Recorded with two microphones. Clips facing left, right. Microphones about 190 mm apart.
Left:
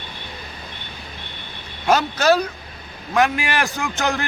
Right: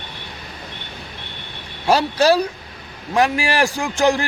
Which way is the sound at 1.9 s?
35° right (ahead or behind).